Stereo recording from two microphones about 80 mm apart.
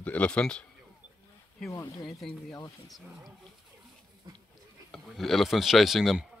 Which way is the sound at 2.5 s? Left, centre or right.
Left.